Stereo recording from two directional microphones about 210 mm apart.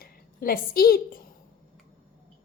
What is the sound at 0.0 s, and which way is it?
A woman's voice, 45° left (ahead or behind).